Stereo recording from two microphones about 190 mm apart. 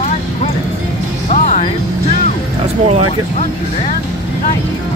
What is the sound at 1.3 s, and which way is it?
Music, 45° left (ahead or behind).